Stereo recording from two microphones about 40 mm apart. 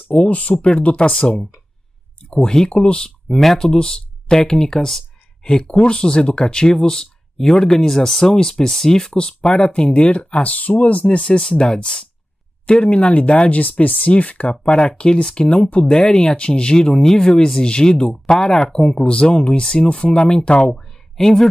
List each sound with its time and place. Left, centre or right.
0.1 s speech: left
3.3 s speech: centre
3.7 s speech: left
14.6 s speech: left
21.2 s speech: centre